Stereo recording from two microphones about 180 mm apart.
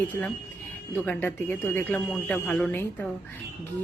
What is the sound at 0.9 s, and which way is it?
Speech, 10° left (ahead or behind).